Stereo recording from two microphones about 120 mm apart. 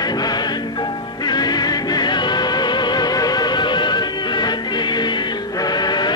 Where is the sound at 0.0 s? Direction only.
35° left (ahead or behind).